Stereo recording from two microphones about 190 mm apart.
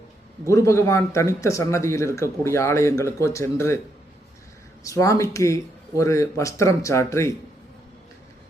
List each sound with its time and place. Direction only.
0.5 s speech: 15° left (ahead or behind)
4.8 s speech: 15° left (ahead or behind)